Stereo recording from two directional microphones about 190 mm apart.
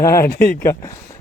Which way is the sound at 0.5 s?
15° left (ahead or behind).